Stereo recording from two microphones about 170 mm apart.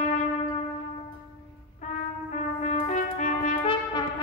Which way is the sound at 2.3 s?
45° left (ahead or behind).